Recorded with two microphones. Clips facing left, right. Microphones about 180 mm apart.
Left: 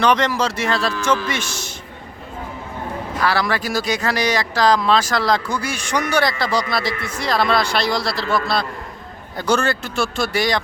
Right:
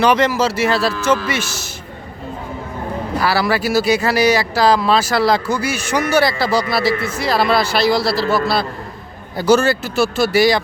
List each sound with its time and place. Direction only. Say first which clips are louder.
0.0 s a man's voice: right 3 dB; 5° right (ahead or behind)
3.2 s a man's voice: right 3 dB; 5° right (ahead or behind)